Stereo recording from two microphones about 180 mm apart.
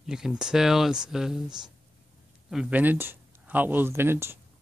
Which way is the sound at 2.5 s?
5° right (ahead or behind).